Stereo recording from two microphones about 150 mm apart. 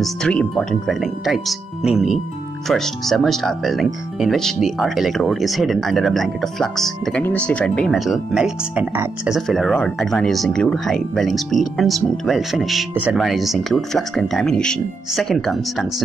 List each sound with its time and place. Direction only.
0.0 s speech: 5° left (ahead or behind)
8.9 s speech: 15° right (ahead or behind)
9.3 s speech: centre (ahead or behind)